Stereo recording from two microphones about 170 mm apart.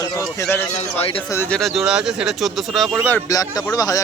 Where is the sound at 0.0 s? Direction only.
20° left (ahead or behind).